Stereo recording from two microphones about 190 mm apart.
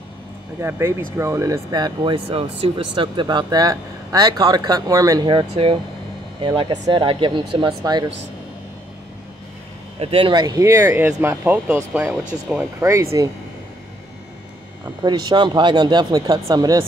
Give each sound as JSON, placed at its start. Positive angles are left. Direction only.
{"t": 0.6, "sound": "speech", "side_deg": -15}
{"t": 9.9, "sound": "speech", "side_deg": -30}
{"t": 15.0, "sound": "speech", "side_deg": -25}